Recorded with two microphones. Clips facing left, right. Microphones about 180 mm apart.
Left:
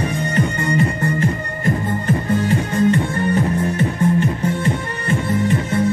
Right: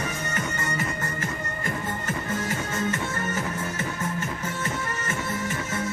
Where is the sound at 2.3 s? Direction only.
30° left (ahead or behind).